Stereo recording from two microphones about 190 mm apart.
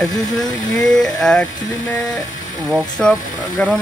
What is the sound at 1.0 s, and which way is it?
Speech, 5° left (ahead or behind).